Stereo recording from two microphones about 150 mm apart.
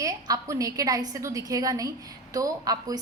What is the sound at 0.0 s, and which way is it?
A woman's voice, 20° right (ahead or behind).